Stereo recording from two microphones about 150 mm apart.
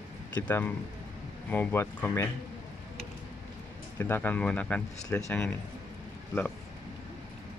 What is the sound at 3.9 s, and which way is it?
Speech, 10° left (ahead or behind).